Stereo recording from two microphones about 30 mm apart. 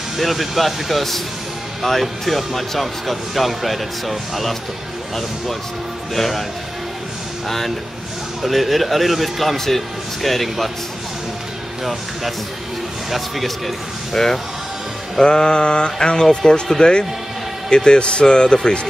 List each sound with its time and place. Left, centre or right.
0.2 s speech: centre
6.1 s speech: centre
7.4 s speech: centre
11.8 s speech: centre
14.1 s speech: centre
15.1 s mantra: left
16.2 s mantra: centre
16.8 s a man's voice: left
18.2 s mantra: left